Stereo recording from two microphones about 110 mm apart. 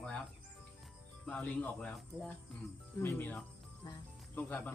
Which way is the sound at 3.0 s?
20° left (ahead or behind).